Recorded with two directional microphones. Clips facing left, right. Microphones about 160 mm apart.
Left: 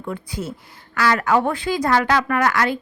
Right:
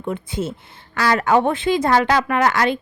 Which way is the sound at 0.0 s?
25° right (ahead or behind).